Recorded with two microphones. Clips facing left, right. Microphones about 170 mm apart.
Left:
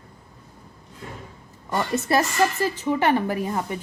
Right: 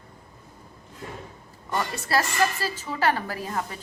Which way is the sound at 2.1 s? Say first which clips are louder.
Left 2 dB; 20° left (ahead or behind).